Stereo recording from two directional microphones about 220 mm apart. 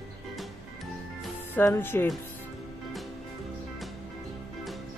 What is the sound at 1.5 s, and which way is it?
Speech, 10° left (ahead or behind).